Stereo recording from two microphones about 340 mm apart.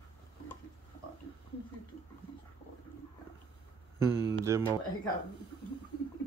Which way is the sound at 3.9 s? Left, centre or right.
Centre.